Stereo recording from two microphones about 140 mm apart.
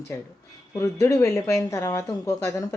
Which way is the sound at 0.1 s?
20° left (ahead or behind).